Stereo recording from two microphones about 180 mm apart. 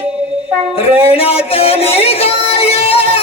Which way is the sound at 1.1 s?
35° left (ahead or behind).